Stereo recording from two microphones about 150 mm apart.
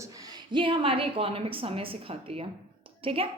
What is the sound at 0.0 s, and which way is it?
A woman's voice, 25° right (ahead or behind).